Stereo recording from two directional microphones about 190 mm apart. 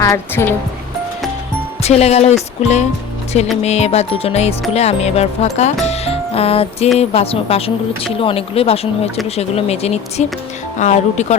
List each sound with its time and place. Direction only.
0.0 s speech: 15° left (ahead or behind)
1.8 s music: 35° left (ahead or behind)